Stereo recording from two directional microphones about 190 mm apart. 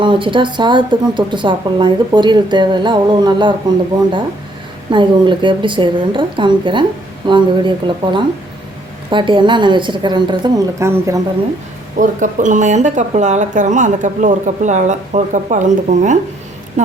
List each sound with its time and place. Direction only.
0.0 s speech: 25° right (ahead or behind)
4.9 s speech: 25° right (ahead or behind)
11.9 s speech: 40° right (ahead or behind)